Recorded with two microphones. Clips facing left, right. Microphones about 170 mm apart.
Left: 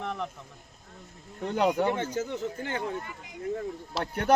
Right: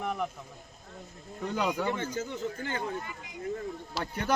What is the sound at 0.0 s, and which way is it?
Speech, 10° right (ahead or behind).